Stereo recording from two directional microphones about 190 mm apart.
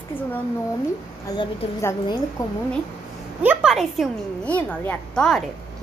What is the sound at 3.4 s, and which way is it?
A woman's voice, 5° right (ahead or behind).